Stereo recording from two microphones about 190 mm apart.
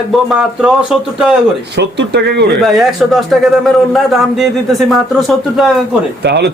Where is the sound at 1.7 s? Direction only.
65° right (ahead or behind).